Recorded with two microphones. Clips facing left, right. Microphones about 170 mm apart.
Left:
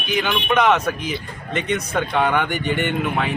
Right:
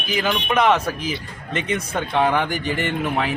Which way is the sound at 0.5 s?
Centre (ahead or behind).